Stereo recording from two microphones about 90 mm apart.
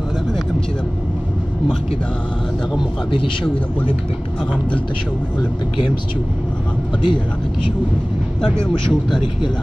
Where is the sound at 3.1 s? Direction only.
65° left (ahead or behind).